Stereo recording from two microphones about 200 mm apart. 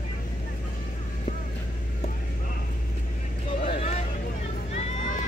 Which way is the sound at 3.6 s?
30° left (ahead or behind).